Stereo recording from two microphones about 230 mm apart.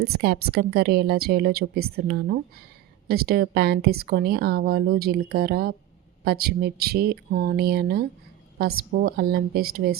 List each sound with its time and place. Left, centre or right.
0.0 s a woman's voice: right